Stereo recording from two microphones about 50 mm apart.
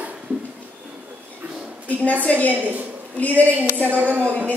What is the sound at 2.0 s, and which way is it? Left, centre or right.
Speech, left.